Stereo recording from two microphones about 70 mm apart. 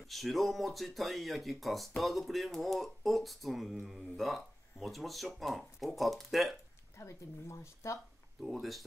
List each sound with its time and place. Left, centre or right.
0.0 s speech: centre
7.0 s speech: left
8.4 s speech: centre